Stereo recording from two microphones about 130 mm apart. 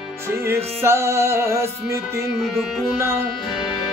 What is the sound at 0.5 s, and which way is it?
Music, 20° right (ahead or behind).